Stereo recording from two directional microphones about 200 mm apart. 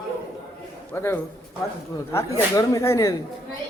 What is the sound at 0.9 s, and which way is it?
A man's voice, 10° left (ahead or behind).